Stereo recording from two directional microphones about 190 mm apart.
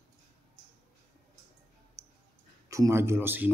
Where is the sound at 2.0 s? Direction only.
15° right (ahead or behind).